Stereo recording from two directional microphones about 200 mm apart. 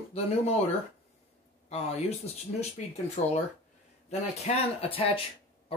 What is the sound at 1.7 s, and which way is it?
Speech, 30° left (ahead or behind).